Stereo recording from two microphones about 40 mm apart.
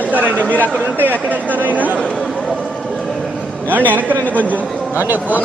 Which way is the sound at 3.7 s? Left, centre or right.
Right.